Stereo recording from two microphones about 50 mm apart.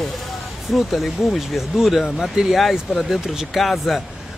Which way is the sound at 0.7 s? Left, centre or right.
Centre.